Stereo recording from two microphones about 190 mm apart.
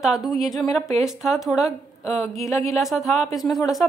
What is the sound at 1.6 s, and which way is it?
A woman's voice, 15° left (ahead or behind).